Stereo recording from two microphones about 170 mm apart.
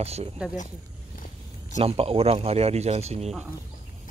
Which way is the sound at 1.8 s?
35° right (ahead or behind).